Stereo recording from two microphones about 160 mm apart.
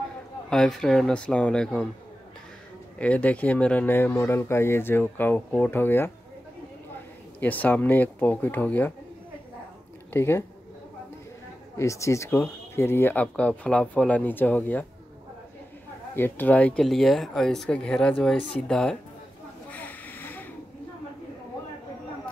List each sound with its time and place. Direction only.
0.5 s speech: 5° left (ahead or behind)
3.0 s speech: 10° left (ahead or behind)
7.3 s speech: 10° left (ahead or behind)
10.1 s speech: 15° left (ahead or behind)
11.7 s speech: 20° left (ahead or behind)
16.2 s speech: 10° left (ahead or behind)
19.7 s a sound: 10° left (ahead or behind)